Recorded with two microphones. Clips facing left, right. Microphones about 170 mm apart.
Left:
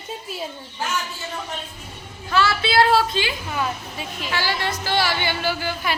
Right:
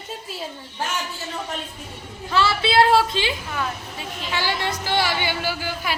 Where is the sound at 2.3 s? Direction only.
25° right (ahead or behind).